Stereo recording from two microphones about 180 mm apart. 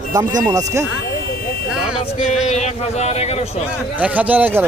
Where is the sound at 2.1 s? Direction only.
40° left (ahead or behind).